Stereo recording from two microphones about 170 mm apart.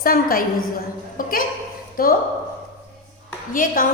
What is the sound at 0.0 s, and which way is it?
Speech, 60° left (ahead or behind).